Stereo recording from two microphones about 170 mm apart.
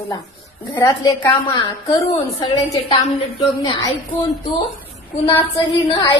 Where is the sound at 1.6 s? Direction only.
25° left (ahead or behind).